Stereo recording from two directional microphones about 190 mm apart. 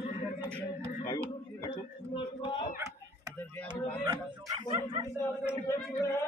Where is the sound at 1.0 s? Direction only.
15° left (ahead or behind).